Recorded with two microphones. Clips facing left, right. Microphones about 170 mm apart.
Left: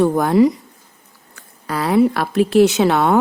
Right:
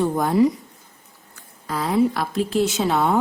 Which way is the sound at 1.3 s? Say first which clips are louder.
Left 4 dB; 70° left (ahead or behind).